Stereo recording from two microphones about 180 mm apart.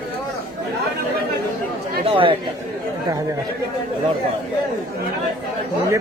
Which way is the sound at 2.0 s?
30° right (ahead or behind).